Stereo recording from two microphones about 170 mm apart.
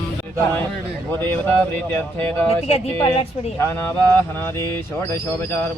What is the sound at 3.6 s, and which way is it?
Speech, 15° left (ahead or behind).